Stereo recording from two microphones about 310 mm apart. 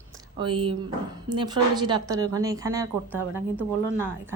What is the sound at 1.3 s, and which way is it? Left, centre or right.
A woman's voice, centre.